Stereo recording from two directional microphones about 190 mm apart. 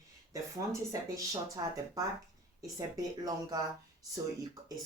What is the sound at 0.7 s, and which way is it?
Speech, 20° right (ahead or behind).